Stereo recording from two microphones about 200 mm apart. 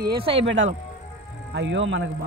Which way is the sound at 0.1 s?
25° right (ahead or behind).